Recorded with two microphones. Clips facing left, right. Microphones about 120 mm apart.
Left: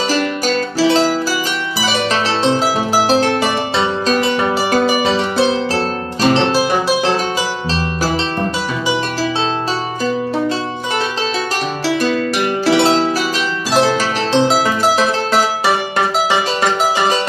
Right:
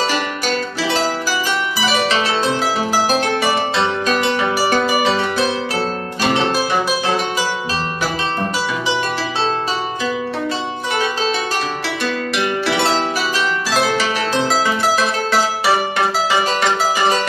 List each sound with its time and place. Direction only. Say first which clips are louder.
3.1 s music: left 4 dB; 30° left (ahead or behind)
5.0 s harp: left 2 dB; 30° left (ahead or behind)
12.0 s music: left 2 dB; 40° left (ahead or behind)
13.7 s harp: left 5 dB; 30° left (ahead or behind)